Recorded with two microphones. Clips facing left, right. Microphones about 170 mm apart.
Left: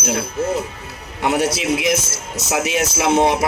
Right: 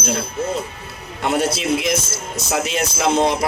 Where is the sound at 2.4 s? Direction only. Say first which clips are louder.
Left 2 dB; 5° left (ahead or behind).